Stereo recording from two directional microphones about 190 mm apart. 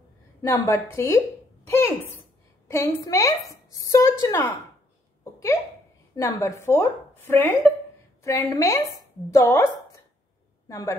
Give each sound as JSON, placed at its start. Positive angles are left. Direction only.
{"t": 0.4, "sound": "a woman's voice", "side_deg": 15}
{"t": 1.7, "sound": "a sound", "side_deg": 15}
{"t": 2.7, "sound": "a woman's voice", "side_deg": 15}
{"t": 5.2, "sound": "hiccup", "side_deg": 15}
{"t": 6.1, "sound": "a woman's voice", "side_deg": 15}